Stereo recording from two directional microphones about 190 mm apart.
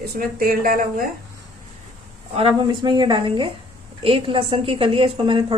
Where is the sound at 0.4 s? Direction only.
50° right (ahead or behind).